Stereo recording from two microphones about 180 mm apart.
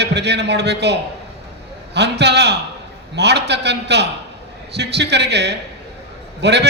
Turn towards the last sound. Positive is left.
turn(degrees=-70)  # may be behind; listen again after turning